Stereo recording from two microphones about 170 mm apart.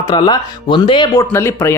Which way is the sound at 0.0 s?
25° left (ahead or behind).